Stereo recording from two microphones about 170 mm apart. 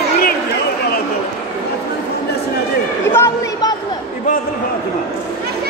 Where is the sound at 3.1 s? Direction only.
15° left (ahead or behind).